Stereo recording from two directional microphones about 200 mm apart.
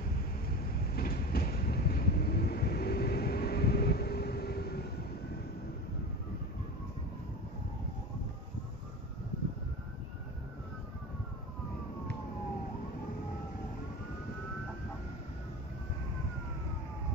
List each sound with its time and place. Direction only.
0.9 s train: 50° left (ahead or behind)